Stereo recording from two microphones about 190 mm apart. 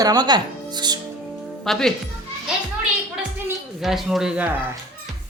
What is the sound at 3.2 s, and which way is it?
Music, 5° right (ahead or behind).